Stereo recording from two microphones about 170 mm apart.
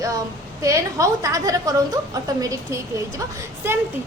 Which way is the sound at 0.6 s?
20° right (ahead or behind).